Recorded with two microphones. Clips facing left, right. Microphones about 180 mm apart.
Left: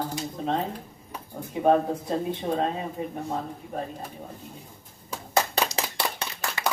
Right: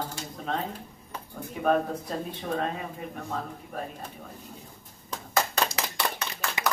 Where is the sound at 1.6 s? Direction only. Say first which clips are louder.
Left 4 dB; 25° left (ahead or behind).